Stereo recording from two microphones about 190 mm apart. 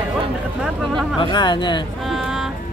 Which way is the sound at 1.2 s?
25° left (ahead or behind).